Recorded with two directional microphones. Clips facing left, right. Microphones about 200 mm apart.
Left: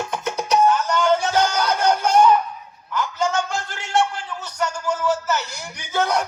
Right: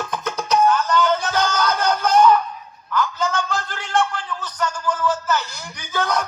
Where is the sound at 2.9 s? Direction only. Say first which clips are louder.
Even; 15° left (ahead or behind).